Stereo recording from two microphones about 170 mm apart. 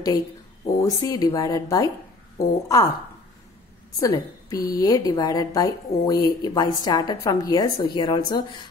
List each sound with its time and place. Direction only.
0.7 s a woman's voice: 20° left (ahead or behind)
4.0 s a woman's voice: 20° left (ahead or behind)